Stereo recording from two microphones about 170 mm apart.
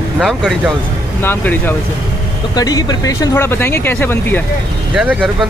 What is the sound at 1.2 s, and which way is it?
Speech, 10° left (ahead or behind).